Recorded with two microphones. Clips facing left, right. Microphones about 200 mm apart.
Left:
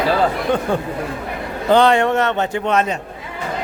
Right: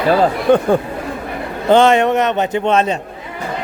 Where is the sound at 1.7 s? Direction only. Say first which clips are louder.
Right 3 dB; 20° right (ahead or behind).